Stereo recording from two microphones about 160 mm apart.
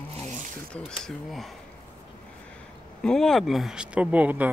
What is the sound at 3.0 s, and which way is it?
Speech, 5° left (ahead or behind).